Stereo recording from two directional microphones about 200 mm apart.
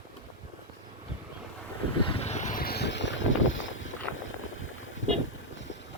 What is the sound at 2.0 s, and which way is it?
Vehicle, 30° left (ahead or behind).